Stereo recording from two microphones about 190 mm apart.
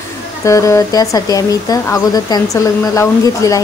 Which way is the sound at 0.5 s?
15° left (ahead or behind).